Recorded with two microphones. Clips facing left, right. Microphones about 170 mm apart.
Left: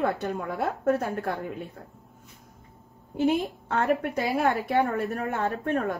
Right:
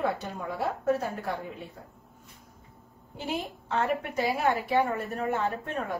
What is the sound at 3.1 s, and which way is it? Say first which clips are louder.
A woman's voice: left 9 dB; 55° left (ahead or behind).